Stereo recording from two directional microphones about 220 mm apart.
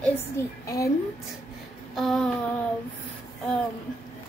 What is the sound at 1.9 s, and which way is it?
Speech, centre (ahead or behind).